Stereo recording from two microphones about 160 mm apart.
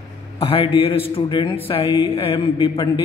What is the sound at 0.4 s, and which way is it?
A man's voice, 35° left (ahead or behind).